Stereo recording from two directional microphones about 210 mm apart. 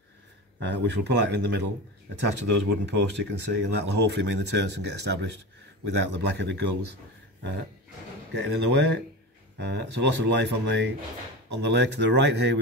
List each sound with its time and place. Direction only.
0.6 s speech: 55° right (ahead or behind)
8.3 s speech: 55° right (ahead or behind)